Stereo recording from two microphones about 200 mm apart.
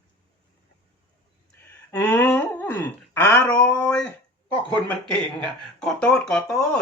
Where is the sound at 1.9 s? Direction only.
10° left (ahead or behind).